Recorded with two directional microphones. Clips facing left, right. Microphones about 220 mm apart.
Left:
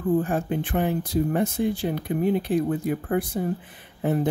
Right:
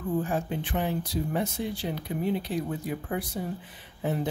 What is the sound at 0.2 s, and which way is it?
Speech, 55° left (ahead or behind).